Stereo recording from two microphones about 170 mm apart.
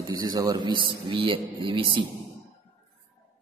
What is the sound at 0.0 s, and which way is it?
Speech, 20° right (ahead or behind).